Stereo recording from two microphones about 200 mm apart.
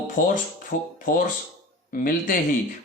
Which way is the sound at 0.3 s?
40° left (ahead or behind).